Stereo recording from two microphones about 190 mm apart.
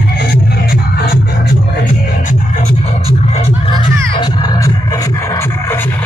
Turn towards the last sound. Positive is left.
turn(degrees=20)  # may be behind; listen again after turning